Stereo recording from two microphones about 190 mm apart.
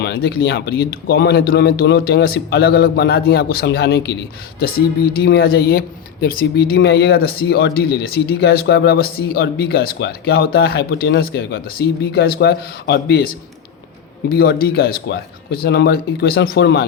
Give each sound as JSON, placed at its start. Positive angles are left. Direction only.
{"t": 0.0, "sound": "speech", "side_deg": 55}
{"t": 5.2, "sound": "speech", "side_deg": 55}